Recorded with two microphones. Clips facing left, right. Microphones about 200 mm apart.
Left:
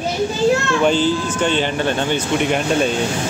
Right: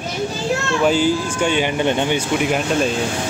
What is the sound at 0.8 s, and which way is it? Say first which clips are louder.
A man's voice: right 2 dB; 10° right (ahead or behind).